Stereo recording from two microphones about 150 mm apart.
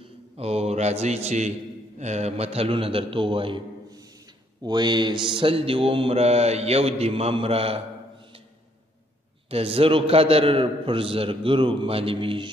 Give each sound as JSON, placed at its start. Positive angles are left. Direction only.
{"t": 0.4, "sound": "mantra", "side_deg": -45}
{"t": 9.5, "sound": "mantra", "side_deg": -40}